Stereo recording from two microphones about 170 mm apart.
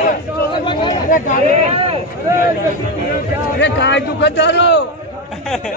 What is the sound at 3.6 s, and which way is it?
A man's voice, 90° left.